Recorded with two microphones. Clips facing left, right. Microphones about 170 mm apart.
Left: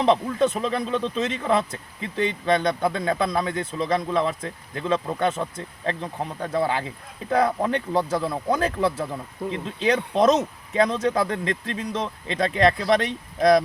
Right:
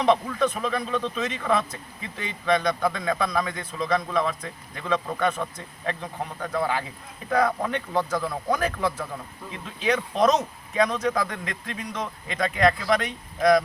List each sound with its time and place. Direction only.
0.0 s a man's voice: 30° left (ahead or behind)